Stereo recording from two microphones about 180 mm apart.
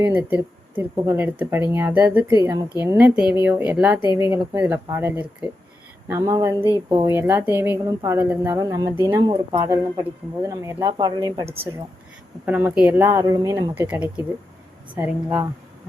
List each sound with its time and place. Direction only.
0.0 s speech: 10° right (ahead or behind)
4.0 s speech: 25° left (ahead or behind)
4.3 s speech: 10° right (ahead or behind)